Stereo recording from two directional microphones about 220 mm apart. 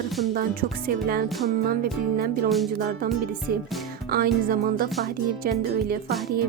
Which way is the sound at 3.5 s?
40° right (ahead or behind).